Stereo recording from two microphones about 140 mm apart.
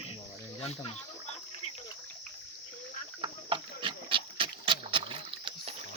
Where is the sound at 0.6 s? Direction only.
45° left (ahead or behind).